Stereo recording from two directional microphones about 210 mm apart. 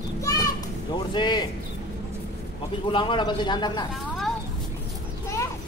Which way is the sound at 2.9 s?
25° left (ahead or behind).